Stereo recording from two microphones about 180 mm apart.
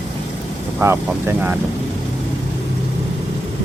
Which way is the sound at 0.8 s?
15° right (ahead or behind).